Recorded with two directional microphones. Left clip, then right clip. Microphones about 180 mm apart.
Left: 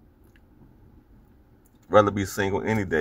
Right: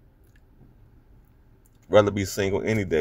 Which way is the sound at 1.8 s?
50° right (ahead or behind).